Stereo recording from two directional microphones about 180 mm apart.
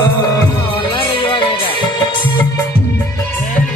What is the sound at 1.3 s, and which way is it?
Music, 25° left (ahead or behind).